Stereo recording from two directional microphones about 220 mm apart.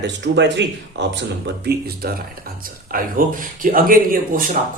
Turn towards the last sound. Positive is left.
turn(degrees=-40)  # may be behind; listen again after turning